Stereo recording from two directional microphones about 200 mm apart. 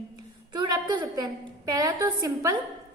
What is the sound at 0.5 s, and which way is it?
A woman's voice, 20° right (ahead or behind).